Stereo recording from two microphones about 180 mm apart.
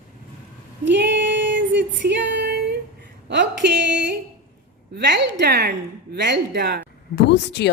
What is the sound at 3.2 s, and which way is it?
A woman's voice, 80° right.